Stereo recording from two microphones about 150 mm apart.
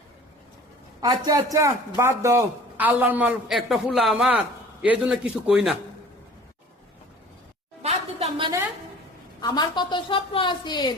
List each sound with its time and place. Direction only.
1.0 s a man's voice: 25° right (ahead or behind); by 5.7 s 5° right (ahead or behind)
7.8 s a sound: 45° right (ahead or behind)
9.4 s a woman's voice: 30° left (ahead or behind)